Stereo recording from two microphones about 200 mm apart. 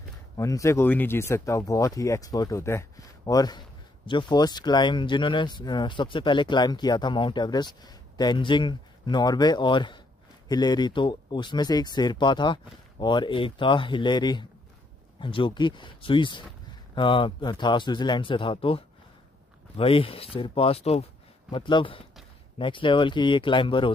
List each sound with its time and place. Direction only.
0.4 s speech: 15° left (ahead or behind)